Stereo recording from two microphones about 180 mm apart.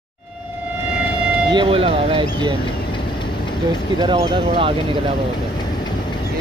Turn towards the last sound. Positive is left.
turn(degrees=-30)  # may be behind; listen again after turning